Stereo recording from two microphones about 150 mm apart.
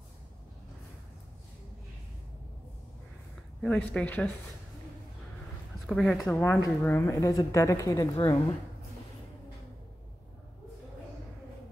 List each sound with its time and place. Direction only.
3.6 s speech: 10° left (ahead or behind)
5.9 s speech: 5° left (ahead or behind)
6.3 s a woman's voice: 15° left (ahead or behind)